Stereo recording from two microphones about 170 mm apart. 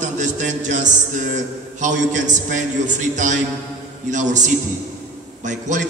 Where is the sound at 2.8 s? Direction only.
45° right (ahead or behind).